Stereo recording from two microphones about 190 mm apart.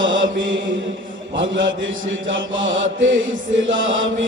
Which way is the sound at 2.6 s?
90° right.